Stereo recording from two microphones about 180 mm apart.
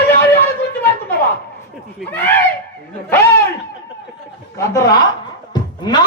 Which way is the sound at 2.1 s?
10° left (ahead or behind).